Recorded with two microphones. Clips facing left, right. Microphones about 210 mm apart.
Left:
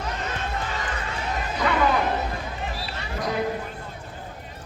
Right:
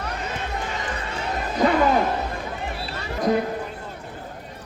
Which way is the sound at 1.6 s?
45° right (ahead or behind).